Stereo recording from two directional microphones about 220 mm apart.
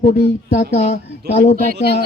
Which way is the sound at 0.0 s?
35° left (ahead or behind).